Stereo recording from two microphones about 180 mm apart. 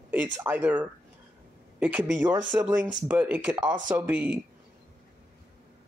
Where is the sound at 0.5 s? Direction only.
10° right (ahead or behind).